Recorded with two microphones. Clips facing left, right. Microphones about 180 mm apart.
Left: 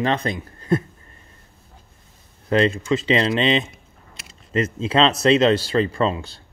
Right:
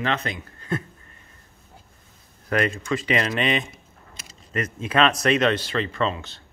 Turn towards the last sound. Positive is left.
turn(degrees=35)  # may be behind; listen again after turning